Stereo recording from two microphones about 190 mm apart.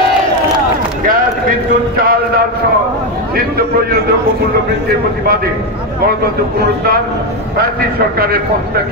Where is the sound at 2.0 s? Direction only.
50° right (ahead or behind).